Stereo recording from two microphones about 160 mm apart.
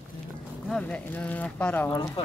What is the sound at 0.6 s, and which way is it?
Speech, 5° left (ahead or behind).